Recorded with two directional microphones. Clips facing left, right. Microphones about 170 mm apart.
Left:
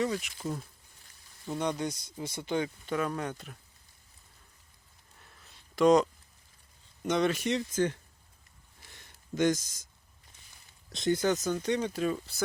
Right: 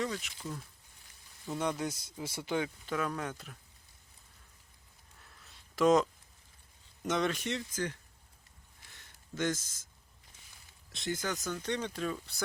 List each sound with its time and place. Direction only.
0.0 s speech: 15° left (ahead or behind)
1.5 s speech: 5° right (ahead or behind)
5.5 s a sound: centre (ahead or behind)
7.0 s speech: centre (ahead or behind)
7.4 s speech: 20° left (ahead or behind)
8.9 s a sound: 15° left (ahead or behind)
10.9 s speech: 30° left (ahead or behind)
11.4 s speech: 15° left (ahead or behind)